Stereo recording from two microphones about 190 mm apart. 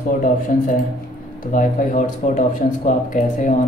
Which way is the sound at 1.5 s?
45° left (ahead or behind).